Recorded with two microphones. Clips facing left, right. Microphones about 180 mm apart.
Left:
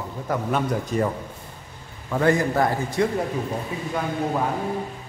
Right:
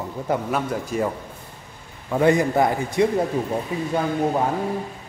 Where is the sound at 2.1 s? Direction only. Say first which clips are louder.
Right 2 dB; 20° right (ahead or behind).